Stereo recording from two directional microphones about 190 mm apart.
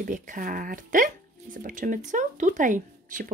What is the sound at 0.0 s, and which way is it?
Speech, 45° right (ahead or behind).